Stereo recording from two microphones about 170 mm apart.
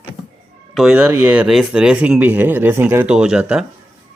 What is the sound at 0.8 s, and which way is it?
Speech, 5° right (ahead or behind).